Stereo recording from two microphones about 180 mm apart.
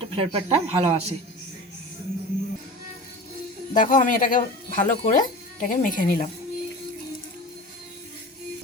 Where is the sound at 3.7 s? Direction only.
45° left (ahead or behind).